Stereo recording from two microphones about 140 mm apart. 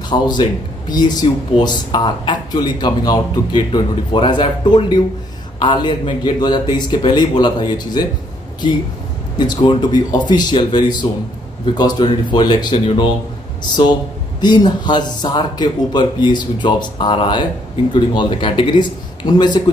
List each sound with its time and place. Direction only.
0.1 s speech: 30° left (ahead or behind)
9.4 s speech: 35° left (ahead or behind)
14.4 s speech: 30° left (ahead or behind)